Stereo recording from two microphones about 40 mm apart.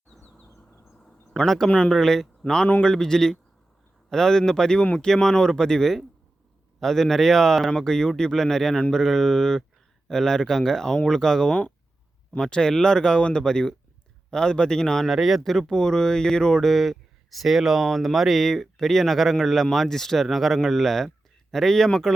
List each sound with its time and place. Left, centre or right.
1.5 s speech: centre
15.0 s speech: centre
15.4 s speech: centre